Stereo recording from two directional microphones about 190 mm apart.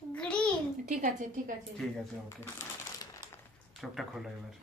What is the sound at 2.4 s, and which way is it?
Crumpling, 15° left (ahead or behind).